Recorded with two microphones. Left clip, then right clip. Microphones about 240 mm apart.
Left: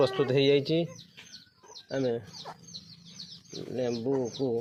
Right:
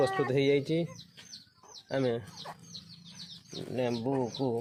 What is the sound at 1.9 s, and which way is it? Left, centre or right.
Speech, right.